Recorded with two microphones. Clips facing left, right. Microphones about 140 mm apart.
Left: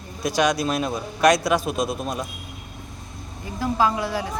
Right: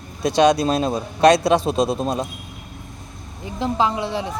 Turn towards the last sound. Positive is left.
turn(degrees=-25)  # may be behind; listen again after turning